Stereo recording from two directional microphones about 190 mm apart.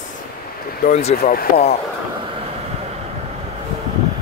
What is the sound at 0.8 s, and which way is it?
Speech, 40° left (ahead or behind).